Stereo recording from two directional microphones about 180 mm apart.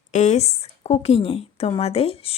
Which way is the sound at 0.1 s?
40° left (ahead or behind).